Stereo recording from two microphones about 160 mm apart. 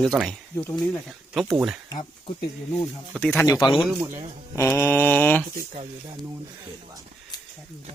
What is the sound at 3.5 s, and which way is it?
Speech, 25° left (ahead or behind).